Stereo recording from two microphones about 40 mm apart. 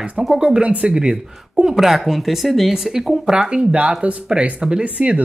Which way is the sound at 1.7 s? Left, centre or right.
Centre.